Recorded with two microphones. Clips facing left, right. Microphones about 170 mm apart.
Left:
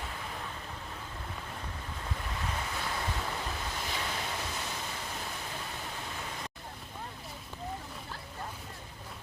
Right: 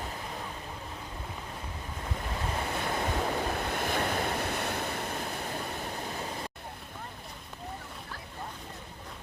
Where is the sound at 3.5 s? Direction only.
60° right (ahead or behind).